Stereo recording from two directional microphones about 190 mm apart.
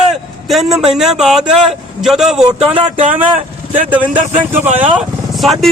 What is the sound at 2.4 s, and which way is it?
Speech, 30° right (ahead or behind).